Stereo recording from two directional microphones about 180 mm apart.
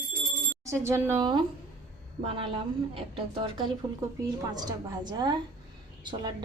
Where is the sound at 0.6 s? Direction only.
15° right (ahead or behind).